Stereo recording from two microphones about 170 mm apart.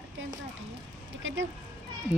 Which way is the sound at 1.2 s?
90° right.